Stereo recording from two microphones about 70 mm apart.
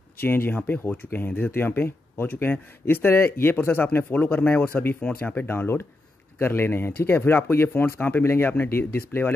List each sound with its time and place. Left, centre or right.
0.2 s speech: left